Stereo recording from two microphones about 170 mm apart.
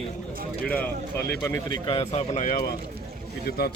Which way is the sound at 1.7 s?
25° left (ahead or behind).